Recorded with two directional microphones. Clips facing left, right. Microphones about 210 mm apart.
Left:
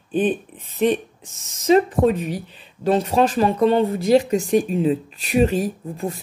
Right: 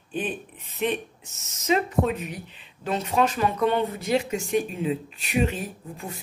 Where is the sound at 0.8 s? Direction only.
35° left (ahead or behind).